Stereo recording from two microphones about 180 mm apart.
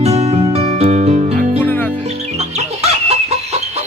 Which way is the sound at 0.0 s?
35° right (ahead or behind).